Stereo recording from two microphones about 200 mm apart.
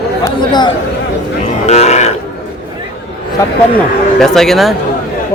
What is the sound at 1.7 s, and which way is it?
Grunt, 35° left (ahead or behind).